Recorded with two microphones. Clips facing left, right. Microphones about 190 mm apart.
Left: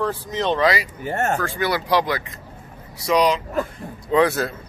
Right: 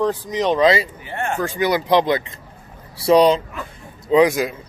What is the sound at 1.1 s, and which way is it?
Speech, 45° left (ahead or behind).